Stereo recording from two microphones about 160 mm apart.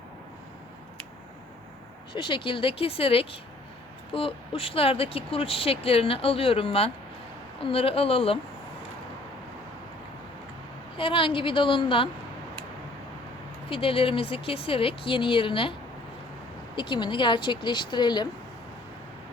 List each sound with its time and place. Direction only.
2.1 s speech: 30° left (ahead or behind)
10.9 s speech: 35° left (ahead or behind)
13.7 s speech: 35° left (ahead or behind)
16.7 s speech: 30° left (ahead or behind)